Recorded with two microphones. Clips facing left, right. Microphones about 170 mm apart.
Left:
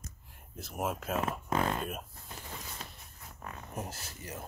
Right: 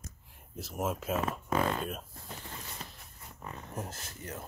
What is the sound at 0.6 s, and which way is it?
Speech, centre (ahead or behind).